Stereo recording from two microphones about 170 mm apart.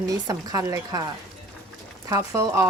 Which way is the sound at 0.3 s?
20° right (ahead or behind).